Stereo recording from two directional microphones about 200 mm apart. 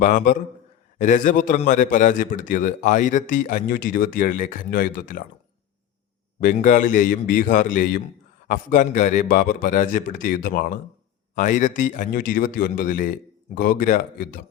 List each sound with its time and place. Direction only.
0.0 s a man's voice: 40° left (ahead or behind)
6.4 s a man's voice: 40° left (ahead or behind)